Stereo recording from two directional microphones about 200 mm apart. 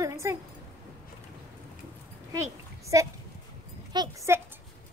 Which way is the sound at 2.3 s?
15° right (ahead or behind).